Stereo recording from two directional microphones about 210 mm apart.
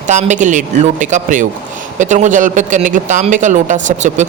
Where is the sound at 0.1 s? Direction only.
35° right (ahead or behind).